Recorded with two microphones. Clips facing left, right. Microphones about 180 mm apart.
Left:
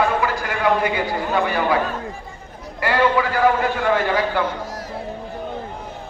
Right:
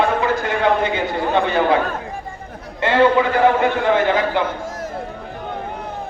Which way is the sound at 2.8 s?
25° right (ahead or behind).